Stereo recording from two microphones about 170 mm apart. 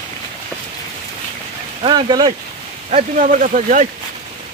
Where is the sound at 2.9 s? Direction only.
50° right (ahead or behind).